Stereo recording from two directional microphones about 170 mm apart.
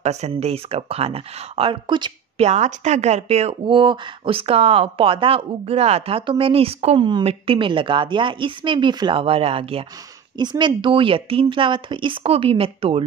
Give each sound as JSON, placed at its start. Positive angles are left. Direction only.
{"t": 0.0, "sound": "speech", "side_deg": -40}
{"t": 2.4, "sound": "speech", "side_deg": -40}